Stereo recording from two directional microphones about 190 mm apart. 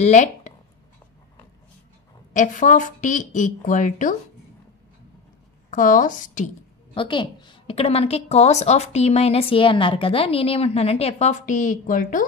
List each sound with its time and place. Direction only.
0.0 s speech: 40° left (ahead or behind)
2.3 s a woman's voice: 40° left (ahead or behind)
5.7 s a woman's voice: 45° left (ahead or behind)
7.0 s a woman's voice: 25° left (ahead or behind); by 12.3 s 45° left (ahead or behind)